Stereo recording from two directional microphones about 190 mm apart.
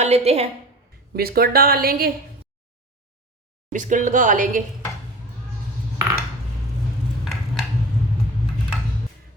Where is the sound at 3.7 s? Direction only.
40° right (ahead or behind).